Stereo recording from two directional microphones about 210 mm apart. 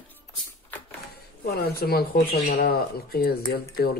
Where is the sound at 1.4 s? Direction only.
45° left (ahead or behind).